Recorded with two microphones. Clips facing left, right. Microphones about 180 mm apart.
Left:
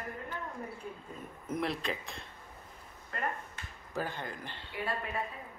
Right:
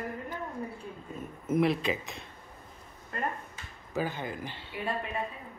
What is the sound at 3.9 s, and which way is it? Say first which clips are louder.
Speech: right 4 dB; 5° right (ahead or behind).